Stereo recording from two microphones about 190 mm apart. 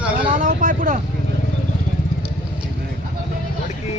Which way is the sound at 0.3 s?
45° right (ahead or behind).